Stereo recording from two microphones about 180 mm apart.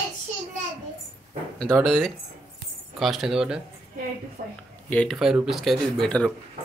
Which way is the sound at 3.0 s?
Centre (ahead or behind).